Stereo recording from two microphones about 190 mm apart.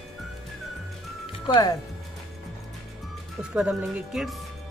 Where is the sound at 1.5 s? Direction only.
20° left (ahead or behind).